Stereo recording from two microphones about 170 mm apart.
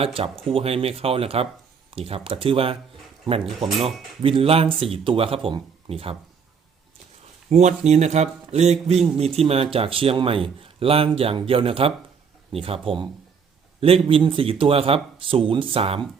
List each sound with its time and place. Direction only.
0.0 s speech: 35° right (ahead or behind)
3.6 s speech: centre (ahead or behind)
4.2 s speech: 35° right (ahead or behind)
7.5 s speech: 45° right (ahead or behind)